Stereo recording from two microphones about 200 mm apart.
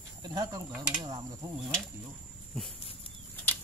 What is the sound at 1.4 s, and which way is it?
Speech, 15° right (ahead or behind).